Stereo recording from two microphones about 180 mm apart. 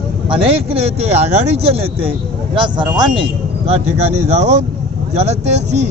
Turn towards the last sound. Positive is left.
turn(degrees=-40)  # may be behind; listen again after turning